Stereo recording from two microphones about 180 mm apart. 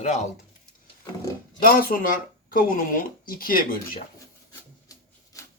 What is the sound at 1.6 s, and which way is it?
Speech, 55° left (ahead or behind).